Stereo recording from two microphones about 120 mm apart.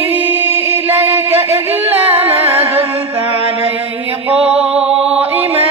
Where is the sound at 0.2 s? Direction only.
15° right (ahead or behind).